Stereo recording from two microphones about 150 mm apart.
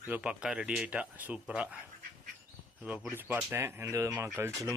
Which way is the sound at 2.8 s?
5° right (ahead or behind).